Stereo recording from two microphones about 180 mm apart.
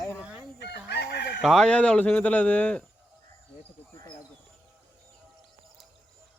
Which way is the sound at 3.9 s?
15° left (ahead or behind).